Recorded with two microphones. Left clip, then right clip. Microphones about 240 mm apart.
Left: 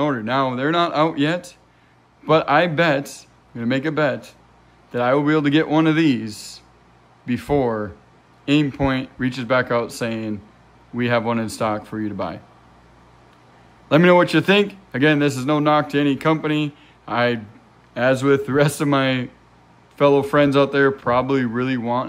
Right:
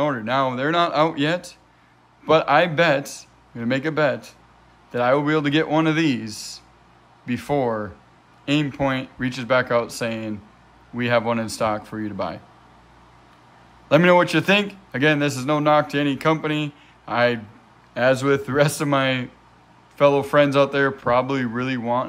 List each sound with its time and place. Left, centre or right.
0.0 s a man's voice: centre
13.8 s a man's voice: centre